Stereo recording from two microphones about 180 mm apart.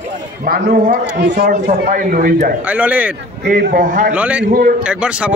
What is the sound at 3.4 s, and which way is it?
Speech, 50° right (ahead or behind).